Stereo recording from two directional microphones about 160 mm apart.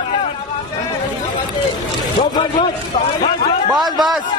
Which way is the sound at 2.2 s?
45° left (ahead or behind).